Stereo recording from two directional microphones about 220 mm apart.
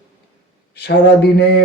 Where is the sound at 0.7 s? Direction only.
50° left (ahead or behind).